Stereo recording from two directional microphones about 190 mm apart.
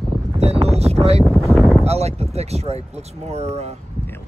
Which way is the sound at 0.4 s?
35° right (ahead or behind).